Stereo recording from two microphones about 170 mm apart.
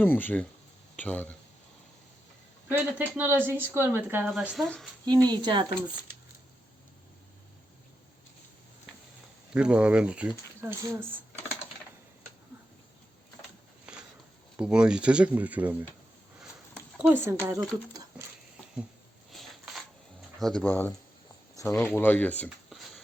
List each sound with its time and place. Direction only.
0.0 s speech: 10° left (ahead or behind)
2.6 s speech: 10° right (ahead or behind)
4.5 s speech: centre (ahead or behind)
5.0 s speech: 25° right (ahead or behind)
9.5 s speech: 5° right (ahead or behind)
13.9 s a sound: 5° right (ahead or behind)
14.5 s speech: 5° right (ahead or behind)
17.0 s speech: 10° right (ahead or behind)
19.3 s a sound: centre (ahead or behind)
20.4 s speech: 5° left (ahead or behind)
22.7 s a sound: centre (ahead or behind)